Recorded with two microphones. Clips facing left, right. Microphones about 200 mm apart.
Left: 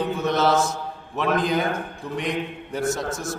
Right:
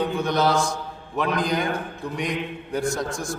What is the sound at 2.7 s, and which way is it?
Speech, 5° left (ahead or behind).